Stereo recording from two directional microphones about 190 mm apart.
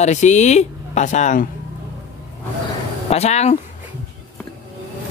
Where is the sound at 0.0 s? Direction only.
40° left (ahead or behind).